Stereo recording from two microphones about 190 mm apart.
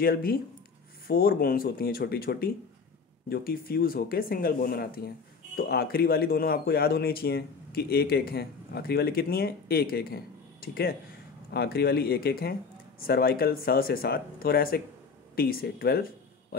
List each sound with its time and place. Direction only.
0.0 s speech: 50° left (ahead or behind)